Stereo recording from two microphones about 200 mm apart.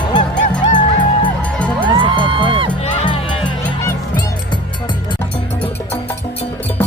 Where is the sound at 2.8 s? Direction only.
30° left (ahead or behind).